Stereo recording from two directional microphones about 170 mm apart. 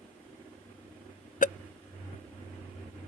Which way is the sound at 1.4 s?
50° left (ahead or behind).